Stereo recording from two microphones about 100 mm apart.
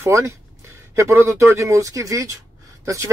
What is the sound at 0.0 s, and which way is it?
Speech, 30° right (ahead or behind).